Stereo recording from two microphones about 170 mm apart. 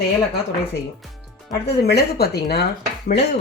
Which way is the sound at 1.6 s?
70° left (ahead or behind).